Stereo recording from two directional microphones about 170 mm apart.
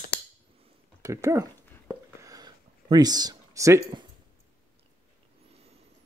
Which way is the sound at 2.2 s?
20° right (ahead or behind).